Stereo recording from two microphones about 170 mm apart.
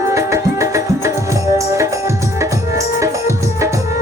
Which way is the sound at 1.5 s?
20° right (ahead or behind).